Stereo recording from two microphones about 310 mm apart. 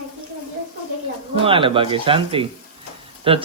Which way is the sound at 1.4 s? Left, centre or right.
Centre.